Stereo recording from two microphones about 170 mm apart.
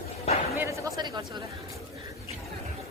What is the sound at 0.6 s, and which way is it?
Chatter, 20° right (ahead or behind).